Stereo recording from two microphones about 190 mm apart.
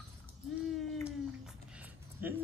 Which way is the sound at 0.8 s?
Centre (ahead or behind).